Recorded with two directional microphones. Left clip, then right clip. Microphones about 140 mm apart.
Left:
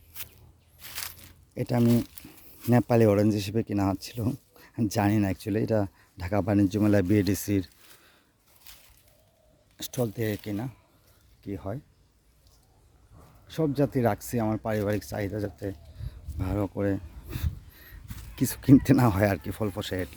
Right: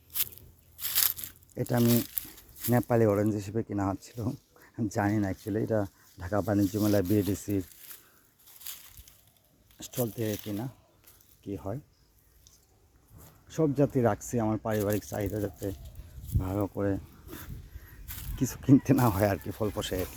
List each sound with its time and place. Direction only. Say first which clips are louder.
1.5 s speech: left 1 dB; 20° left (ahead or behind)
2.6 s speech: left 3 dB; 70° left (ahead or behind)
9.7 s speech: left 3 dB; 40° left (ahead or behind); by 11.8 s 20° left (ahead or behind)
13.5 s speech: even; 10° left (ahead or behind)
16.4 s speech: left 2 dB; 25° left (ahead or behind)
18.3 s speech: left 3 dB; 60° left (ahead or behind)
18.9 s speech: left 2 dB; 40° left (ahead or behind)